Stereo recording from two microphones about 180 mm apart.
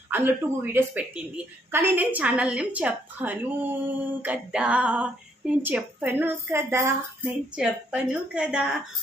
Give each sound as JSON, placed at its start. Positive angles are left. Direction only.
{"t": 0.1, "sound": "a woman's voice", "side_deg": -10}